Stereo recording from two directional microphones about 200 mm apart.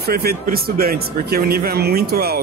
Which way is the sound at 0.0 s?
50° right (ahead or behind).